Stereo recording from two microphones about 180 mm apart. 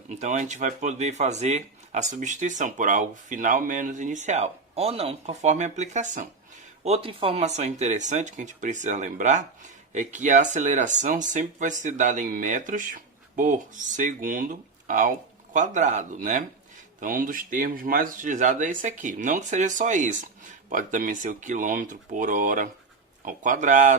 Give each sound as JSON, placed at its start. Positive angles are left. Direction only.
{"t": 0.2, "sound": "speech", "side_deg": -40}
{"t": 6.8, "sound": "speech", "side_deg": -30}